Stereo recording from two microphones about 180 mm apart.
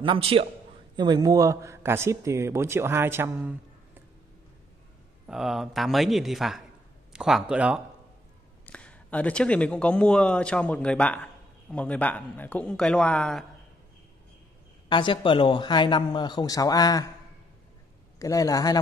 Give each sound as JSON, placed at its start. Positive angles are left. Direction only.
{"t": 0.0, "sound": "a man's voice", "side_deg": -30}
{"t": 5.2, "sound": "a man's voice", "side_deg": 0}
{"t": 8.6, "sound": "a man's voice", "side_deg": 5}
{"t": 14.9, "sound": "speech", "side_deg": 25}
{"t": 18.2, "sound": "speech", "side_deg": 20}